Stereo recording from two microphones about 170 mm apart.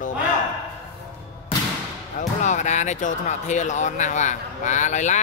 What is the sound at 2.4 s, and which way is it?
Speech, 45° left (ahead or behind).